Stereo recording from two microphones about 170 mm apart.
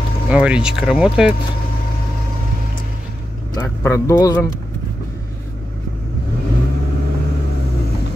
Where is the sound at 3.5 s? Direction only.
15° left (ahead or behind).